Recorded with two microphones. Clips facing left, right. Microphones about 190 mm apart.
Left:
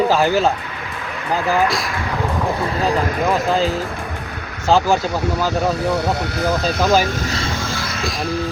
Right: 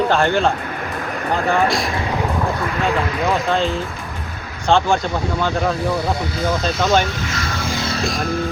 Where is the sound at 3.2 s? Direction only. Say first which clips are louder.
Even; centre (ahead or behind).